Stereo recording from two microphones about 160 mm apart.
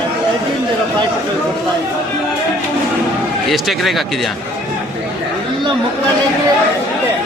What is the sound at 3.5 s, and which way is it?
Speech, centre (ahead or behind).